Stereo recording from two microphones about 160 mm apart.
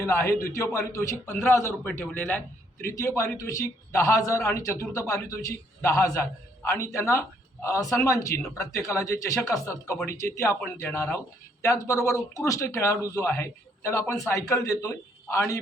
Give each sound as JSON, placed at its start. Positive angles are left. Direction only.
{"t": 0.0, "sound": "a man's voice", "side_deg": 15}